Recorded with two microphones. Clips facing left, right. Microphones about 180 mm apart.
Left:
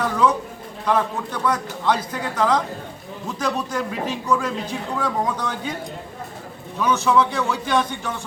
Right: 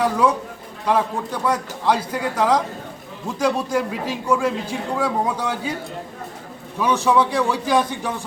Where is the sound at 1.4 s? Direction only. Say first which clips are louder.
Right 1 dB; 10° right (ahead or behind).